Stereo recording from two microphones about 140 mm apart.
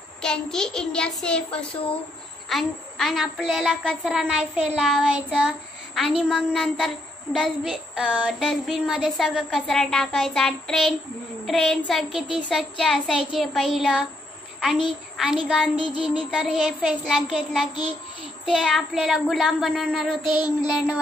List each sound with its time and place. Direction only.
0.2 s a woman's voice: 5° left (ahead or behind)
15.1 s a woman's voice: 5° right (ahead or behind)
20.2 s child singing: 30° left (ahead or behind)